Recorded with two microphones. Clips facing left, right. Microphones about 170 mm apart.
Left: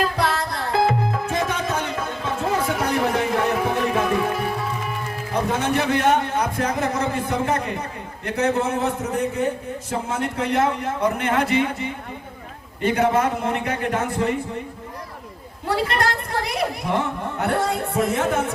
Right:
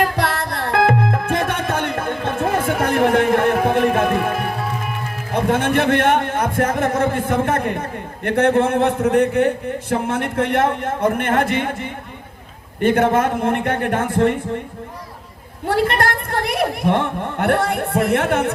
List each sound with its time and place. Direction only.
0.2 s music: 60° right (ahead or behind)
5.3 s a man's voice: 55° right (ahead or behind)
12.9 s speech: 50° right (ahead or behind)
15.7 s a woman's voice: 55° right (ahead or behind)